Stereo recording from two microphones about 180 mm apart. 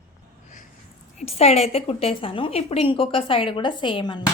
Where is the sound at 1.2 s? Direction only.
35° left (ahead or behind).